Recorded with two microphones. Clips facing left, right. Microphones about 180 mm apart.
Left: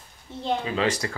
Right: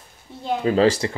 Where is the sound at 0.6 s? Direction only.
40° right (ahead or behind).